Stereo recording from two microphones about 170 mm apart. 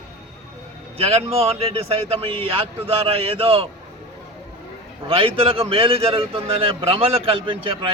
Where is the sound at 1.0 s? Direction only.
35° right (ahead or behind).